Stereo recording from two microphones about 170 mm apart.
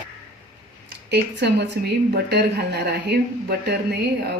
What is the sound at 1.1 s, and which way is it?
A woman's voice, 80° right.